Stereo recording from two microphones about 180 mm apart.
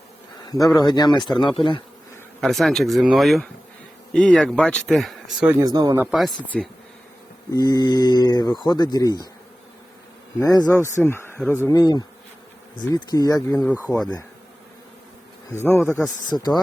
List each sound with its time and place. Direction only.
0.7 s speech: 25° left (ahead or behind)
2.4 s speech: centre (ahead or behind)
5.5 s speech: 20° right (ahead or behind)
6.0 s speech: centre (ahead or behind)
7.5 s speech: 20° left (ahead or behind)
10.4 s speech: 20° left (ahead or behind)
15.6 s speech: 10° left (ahead or behind)
16.0 s speech: 20° left (ahead or behind)